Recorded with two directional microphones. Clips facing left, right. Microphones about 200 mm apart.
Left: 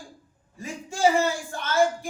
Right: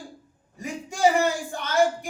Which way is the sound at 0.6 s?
15° right (ahead or behind).